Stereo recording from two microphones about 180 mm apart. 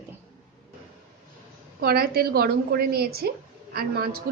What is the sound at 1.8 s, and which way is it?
A woman's voice, 60° right (ahead or behind).